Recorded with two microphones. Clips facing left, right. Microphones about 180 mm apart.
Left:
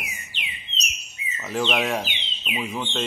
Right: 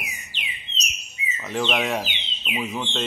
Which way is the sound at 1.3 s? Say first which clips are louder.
Even; centre (ahead or behind).